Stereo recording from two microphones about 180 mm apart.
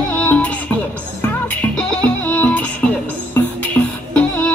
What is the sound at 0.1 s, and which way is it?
Music, 5° left (ahead or behind).